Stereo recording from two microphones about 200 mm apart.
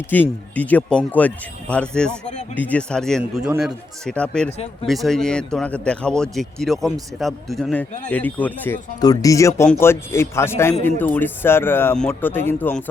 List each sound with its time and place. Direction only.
0.1 s speech: 10° left (ahead or behind)
4.5 s speech: 30° left (ahead or behind)
4.9 s speech: centre (ahead or behind)